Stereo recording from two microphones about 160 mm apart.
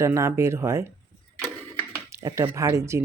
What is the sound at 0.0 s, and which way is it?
Speech, 20° right (ahead or behind).